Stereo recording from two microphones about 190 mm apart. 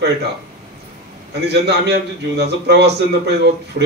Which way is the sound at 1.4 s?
60° right (ahead or behind).